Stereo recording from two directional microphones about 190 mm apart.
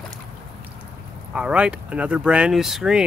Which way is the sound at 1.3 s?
5° right (ahead or behind).